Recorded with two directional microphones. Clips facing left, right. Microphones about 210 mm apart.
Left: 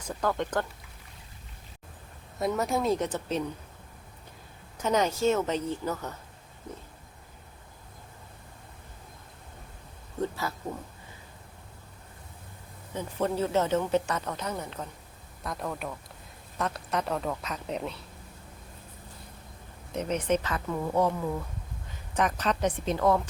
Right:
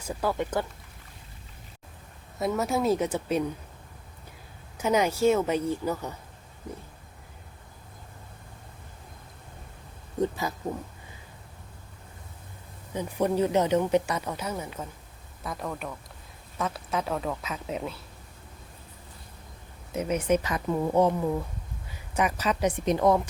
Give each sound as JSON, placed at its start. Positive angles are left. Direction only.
{"t": 0.0, "sound": "speech", "side_deg": -10}
{"t": 2.4, "sound": "a woman's voice", "side_deg": 0}
{"t": 4.8, "sound": "speech", "side_deg": -10}
{"t": 10.2, "sound": "speech", "side_deg": -15}
{"t": 12.9, "sound": "a woman's voice", "side_deg": -15}
{"t": 19.9, "sound": "speech", "side_deg": -10}
{"t": 22.1, "sound": "speech", "side_deg": -10}